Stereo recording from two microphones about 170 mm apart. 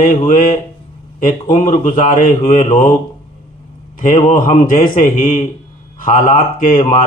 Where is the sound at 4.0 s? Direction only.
50° left (ahead or behind).